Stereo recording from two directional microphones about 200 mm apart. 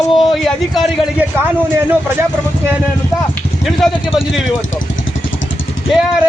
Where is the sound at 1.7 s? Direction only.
10° right (ahead or behind).